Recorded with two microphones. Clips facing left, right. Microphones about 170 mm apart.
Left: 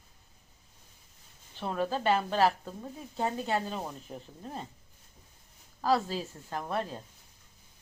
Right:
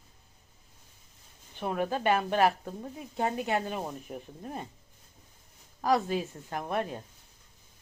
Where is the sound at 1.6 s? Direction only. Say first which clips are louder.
Right 1 dB; 15° right (ahead or behind).